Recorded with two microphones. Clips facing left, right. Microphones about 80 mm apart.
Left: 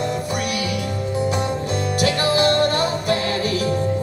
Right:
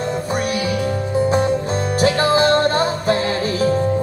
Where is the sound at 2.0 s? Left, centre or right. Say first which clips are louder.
Right 4 dB; right.